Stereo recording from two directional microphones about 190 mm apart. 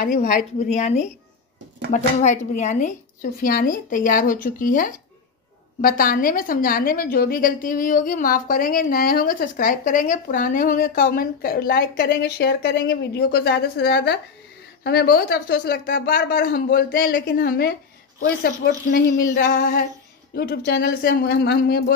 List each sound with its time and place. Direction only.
0.0 s a woman's voice: 45° left (ahead or behind)
20.3 s a woman's voice: 55° left (ahead or behind)